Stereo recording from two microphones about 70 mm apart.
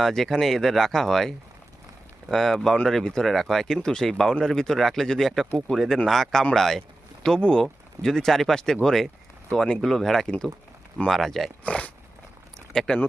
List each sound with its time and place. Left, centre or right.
0.0 s speech: centre
11.6 s speech: centre
12.7 s speech: centre